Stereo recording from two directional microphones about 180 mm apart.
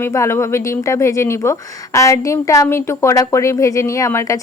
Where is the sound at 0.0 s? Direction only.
15° left (ahead or behind).